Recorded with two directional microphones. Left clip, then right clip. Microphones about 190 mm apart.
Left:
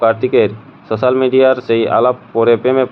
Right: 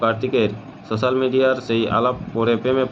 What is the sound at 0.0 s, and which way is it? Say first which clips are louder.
Speech: left 7 dB; 35° left (ahead or behind).